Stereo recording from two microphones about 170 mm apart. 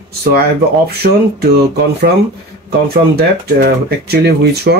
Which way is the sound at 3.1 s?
65° right (ahead or behind).